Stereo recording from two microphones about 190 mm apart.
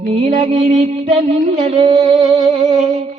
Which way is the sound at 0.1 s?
30° right (ahead or behind).